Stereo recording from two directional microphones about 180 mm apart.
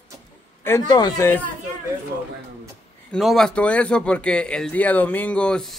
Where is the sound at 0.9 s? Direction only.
25° left (ahead or behind).